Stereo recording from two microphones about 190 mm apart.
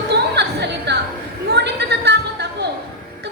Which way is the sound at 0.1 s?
60° right (ahead or behind).